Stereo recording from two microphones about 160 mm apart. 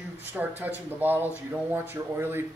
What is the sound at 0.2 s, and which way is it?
Speech, 10° right (ahead or behind).